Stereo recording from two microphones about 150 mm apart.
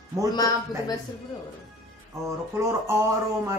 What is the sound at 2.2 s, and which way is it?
Speech, 20° right (ahead or behind).